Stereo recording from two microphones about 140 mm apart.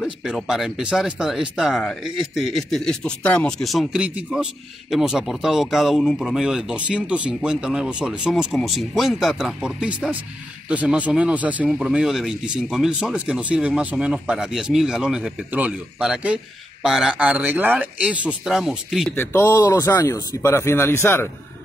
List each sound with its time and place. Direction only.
0.0 s speech: 5° right (ahead or behind)
19.1 s a man's voice: 15° left (ahead or behind)